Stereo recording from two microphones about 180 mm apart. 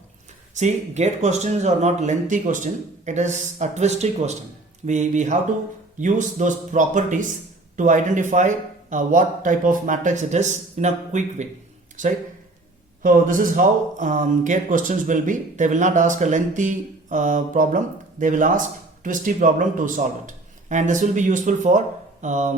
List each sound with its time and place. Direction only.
0.5 s speech: 40° right (ahead or behind)
13.0 s speech: 50° right (ahead or behind)